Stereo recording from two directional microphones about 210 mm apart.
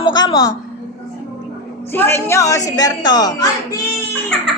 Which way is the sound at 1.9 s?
10° left (ahead or behind).